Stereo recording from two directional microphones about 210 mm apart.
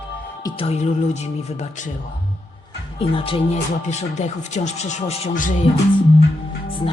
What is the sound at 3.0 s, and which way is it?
Speech, 25° left (ahead or behind).